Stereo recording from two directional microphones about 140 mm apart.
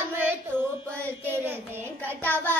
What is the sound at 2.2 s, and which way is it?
Carnatic music, 15° left (ahead or behind).